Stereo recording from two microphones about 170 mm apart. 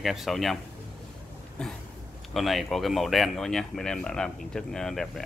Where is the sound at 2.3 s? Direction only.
Centre (ahead or behind).